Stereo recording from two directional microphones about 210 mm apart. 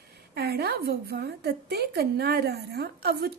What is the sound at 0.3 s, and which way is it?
A woman's voice, 50° right (ahead or behind).